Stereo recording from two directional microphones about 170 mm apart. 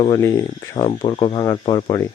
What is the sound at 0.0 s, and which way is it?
Speech, 20° left (ahead or behind).